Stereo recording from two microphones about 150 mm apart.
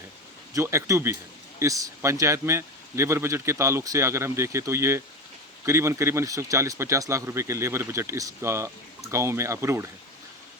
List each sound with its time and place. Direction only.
0.5 s a man's voice: 20° right (ahead or behind)